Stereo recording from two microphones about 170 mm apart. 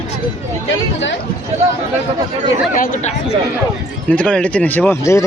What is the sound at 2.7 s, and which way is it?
Speech, 55° left (ahead or behind).